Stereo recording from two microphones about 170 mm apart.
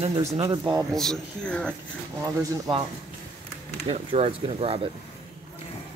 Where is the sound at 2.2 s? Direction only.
20° right (ahead or behind).